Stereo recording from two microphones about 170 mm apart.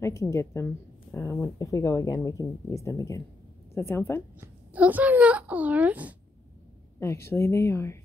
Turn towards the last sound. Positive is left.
turn(degrees=15)  # may be behind; listen again after turning